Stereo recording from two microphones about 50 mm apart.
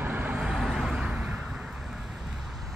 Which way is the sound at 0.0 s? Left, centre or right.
Right.